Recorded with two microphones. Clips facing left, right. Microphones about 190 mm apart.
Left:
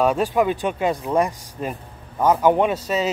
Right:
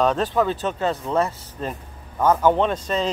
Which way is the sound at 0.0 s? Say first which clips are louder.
Left 1 dB; 10° left (ahead or behind).